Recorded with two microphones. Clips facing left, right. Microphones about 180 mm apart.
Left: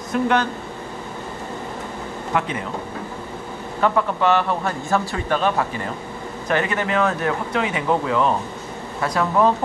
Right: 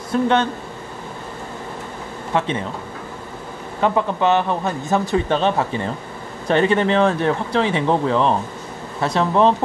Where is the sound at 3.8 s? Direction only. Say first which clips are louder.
Right 1 dB; 20° right (ahead or behind).